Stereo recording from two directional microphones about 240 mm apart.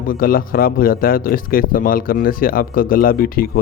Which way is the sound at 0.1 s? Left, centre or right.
Left.